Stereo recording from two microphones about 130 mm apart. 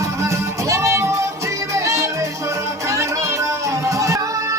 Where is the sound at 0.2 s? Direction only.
25° right (ahead or behind).